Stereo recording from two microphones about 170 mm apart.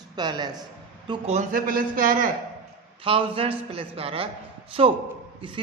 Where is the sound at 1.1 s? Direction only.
40° right (ahead or behind).